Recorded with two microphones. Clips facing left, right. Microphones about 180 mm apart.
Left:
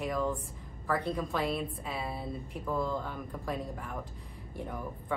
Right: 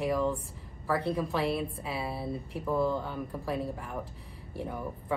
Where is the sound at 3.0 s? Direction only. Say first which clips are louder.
Right 3 dB; 30° right (ahead or behind).